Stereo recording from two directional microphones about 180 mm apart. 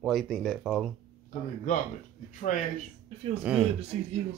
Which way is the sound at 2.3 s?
45° left (ahead or behind).